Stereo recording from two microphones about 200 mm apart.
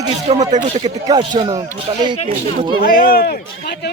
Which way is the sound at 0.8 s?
20° right (ahead or behind).